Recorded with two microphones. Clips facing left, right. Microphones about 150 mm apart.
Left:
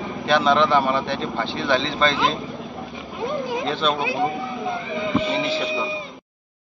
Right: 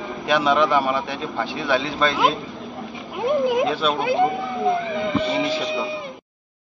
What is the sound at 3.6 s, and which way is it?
Speech, 10° right (ahead or behind).